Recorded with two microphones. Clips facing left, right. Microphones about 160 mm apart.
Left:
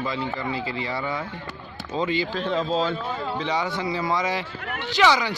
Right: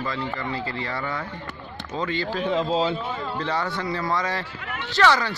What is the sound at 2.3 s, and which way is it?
Speech, 5° right (ahead or behind).